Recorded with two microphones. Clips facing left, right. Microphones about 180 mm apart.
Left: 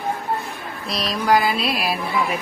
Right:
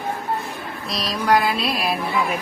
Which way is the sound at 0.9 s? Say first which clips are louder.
Left 1 dB; centre (ahead or behind).